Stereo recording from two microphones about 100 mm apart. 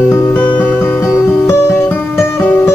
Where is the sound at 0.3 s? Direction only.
20° left (ahead or behind).